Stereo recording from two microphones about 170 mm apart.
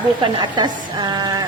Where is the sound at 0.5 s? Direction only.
25° right (ahead or behind).